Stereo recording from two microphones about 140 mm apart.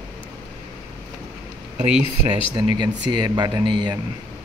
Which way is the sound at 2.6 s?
35° right (ahead or behind).